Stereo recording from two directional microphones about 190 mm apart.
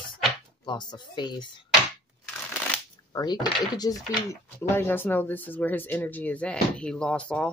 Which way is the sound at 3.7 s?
20° left (ahead or behind).